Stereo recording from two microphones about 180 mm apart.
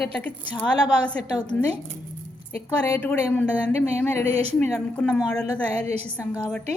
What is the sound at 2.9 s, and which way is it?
A woman's voice, 10° left (ahead or behind).